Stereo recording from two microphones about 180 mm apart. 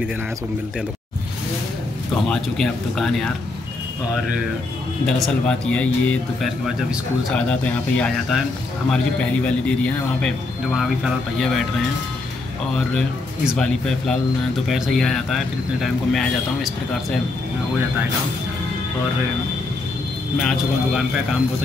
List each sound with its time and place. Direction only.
2.2 s a man's voice: 5° left (ahead or behind)
5.0 s a man's voice: centre (ahead or behind)
11.3 s a man's voice: centre (ahead or behind)
13.6 s a man's voice: 5° left (ahead or behind)
20.3 s a man's voice: centre (ahead or behind)